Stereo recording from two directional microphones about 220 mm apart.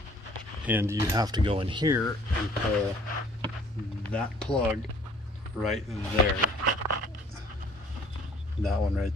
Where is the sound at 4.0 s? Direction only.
5° left (ahead or behind).